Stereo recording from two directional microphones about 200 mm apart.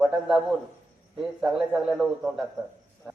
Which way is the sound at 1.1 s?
Centre (ahead or behind).